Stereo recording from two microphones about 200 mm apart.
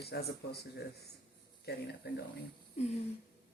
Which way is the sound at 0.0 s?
55° left (ahead or behind).